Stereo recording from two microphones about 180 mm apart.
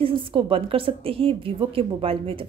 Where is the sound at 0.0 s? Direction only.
30° right (ahead or behind).